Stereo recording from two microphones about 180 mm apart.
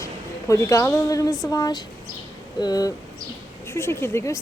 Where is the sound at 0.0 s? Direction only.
15° left (ahead or behind).